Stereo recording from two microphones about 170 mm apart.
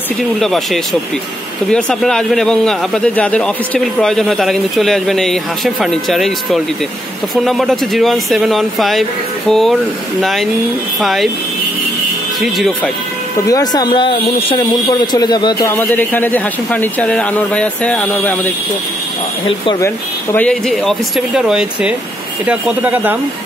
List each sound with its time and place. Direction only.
0.4 s speech: centre (ahead or behind)
12.4 s speech: centre (ahead or behind)
13.5 s speech: 20° left (ahead or behind)
19.4 s speech: 30° left (ahead or behind)
20.3 s speech: 5° left (ahead or behind)